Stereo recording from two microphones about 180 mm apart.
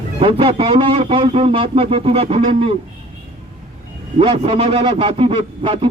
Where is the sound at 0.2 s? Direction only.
30° right (ahead or behind).